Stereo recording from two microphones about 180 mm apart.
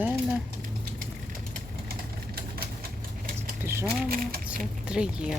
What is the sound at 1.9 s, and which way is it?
Vehicle, 55° right (ahead or behind).